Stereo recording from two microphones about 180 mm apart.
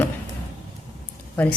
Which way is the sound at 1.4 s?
5° left (ahead or behind).